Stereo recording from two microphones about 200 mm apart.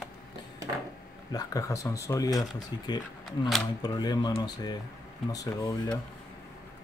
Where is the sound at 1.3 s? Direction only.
15° left (ahead or behind).